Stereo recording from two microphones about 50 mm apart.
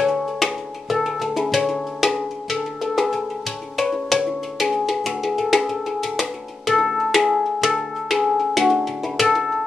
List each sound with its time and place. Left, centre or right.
0.0 s music: centre
1.7 s cowbell: centre
3.7 s music: centre